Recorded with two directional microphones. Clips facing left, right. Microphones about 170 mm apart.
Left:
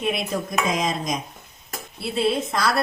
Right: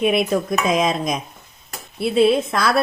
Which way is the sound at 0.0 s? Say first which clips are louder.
Right 7 dB; 60° right (ahead or behind).